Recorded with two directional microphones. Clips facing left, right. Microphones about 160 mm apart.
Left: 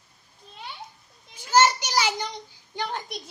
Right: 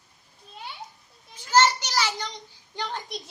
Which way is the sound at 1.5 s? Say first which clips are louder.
Left 1 dB; 10° left (ahead or behind).